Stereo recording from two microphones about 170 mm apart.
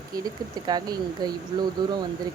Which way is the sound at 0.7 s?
25° right (ahead or behind).